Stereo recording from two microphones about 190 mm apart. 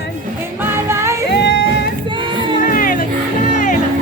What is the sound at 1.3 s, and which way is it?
Music, 70° left (ahead or behind).